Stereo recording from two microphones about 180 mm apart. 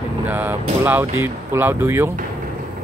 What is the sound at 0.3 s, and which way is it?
Speech, 10° right (ahead or behind).